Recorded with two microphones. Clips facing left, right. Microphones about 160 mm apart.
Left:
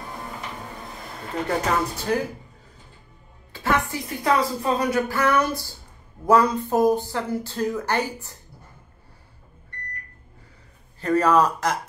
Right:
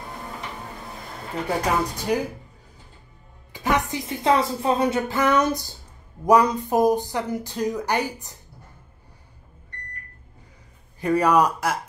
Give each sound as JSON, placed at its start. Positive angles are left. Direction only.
{"t": 1.6, "sound": "a woman's voice", "side_deg": -15}
{"t": 3.5, "sound": "a woman's voice", "side_deg": -15}
{"t": 11.0, "sound": "a woman's voice", "side_deg": -15}